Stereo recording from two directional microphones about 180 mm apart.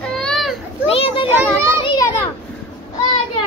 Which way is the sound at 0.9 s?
30° left (ahead or behind).